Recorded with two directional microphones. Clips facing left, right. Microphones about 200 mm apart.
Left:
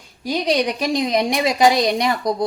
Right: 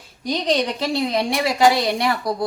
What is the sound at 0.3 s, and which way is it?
A woman's voice, 10° left (ahead or behind).